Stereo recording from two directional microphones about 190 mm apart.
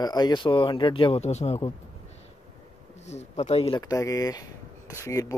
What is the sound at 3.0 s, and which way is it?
Speech, 35° left (ahead or behind).